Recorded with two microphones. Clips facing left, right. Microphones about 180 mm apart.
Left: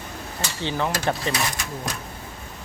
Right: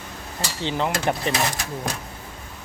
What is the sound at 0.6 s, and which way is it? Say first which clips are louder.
Speech: right 1 dB; 20° right (ahead or behind).